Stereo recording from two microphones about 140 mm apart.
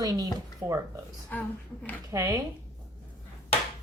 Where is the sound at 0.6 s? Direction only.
15° right (ahead or behind).